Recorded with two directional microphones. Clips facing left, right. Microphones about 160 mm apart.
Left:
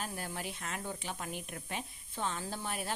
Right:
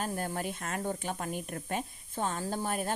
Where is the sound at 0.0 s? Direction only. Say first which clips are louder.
Right 6 dB; 45° right (ahead or behind).